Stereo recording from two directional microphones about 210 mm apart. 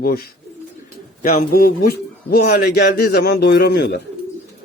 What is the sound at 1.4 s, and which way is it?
A man's voice, 45° left (ahead or behind).